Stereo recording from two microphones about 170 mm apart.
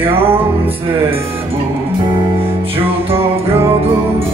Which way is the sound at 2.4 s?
35° right (ahead or behind).